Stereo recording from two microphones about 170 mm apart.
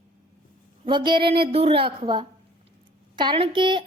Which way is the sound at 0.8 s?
30° right (ahead or behind).